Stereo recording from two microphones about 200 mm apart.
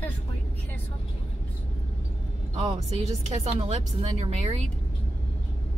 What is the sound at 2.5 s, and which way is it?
Speech, 30° right (ahead or behind).